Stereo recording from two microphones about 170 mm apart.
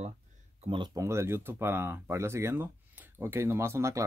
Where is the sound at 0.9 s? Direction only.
15° right (ahead or behind).